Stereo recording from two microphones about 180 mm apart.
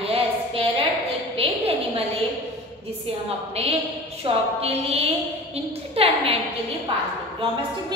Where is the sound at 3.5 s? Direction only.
35° right (ahead or behind).